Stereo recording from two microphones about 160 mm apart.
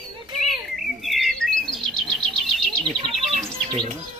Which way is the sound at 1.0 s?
Centre (ahead or behind).